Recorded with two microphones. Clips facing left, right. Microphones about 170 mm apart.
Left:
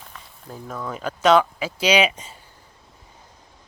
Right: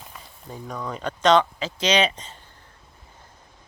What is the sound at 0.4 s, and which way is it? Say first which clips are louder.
Speech: left 1 dB; centre (ahead or behind).